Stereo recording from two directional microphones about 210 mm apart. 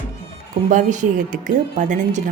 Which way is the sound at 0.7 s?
35° right (ahead or behind).